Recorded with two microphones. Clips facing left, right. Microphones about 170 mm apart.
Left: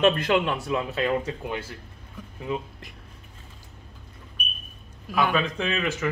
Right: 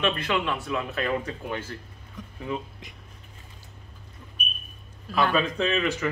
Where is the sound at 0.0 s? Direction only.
40° left (ahead or behind).